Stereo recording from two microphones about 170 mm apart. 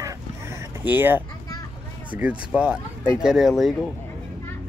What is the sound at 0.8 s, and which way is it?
Speech, 10° right (ahead or behind).